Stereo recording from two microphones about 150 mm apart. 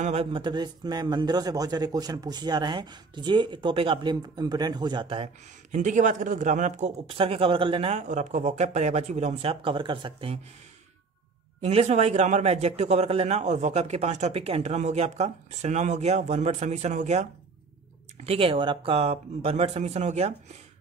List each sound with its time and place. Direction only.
0.0 s speech: 40° right (ahead or behind)
5.7 s a man's voice: 55° right (ahead or behind)
7.1 s speech: 35° right (ahead or behind)
11.6 s a man's voice: 45° right (ahead or behind)
18.2 s speech: 40° right (ahead or behind)